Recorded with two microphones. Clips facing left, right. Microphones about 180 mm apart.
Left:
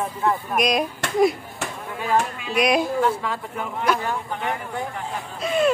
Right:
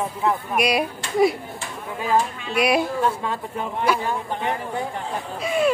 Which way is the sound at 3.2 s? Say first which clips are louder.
Right 1 dB; 30° right (ahead or behind).